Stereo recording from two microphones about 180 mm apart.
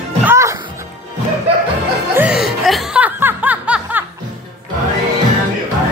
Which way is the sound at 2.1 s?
5° right (ahead or behind).